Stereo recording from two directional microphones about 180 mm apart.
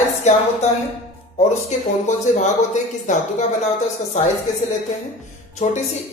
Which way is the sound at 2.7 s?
40° left (ahead or behind).